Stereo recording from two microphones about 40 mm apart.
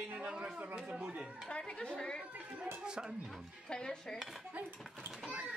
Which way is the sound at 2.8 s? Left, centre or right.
Centre.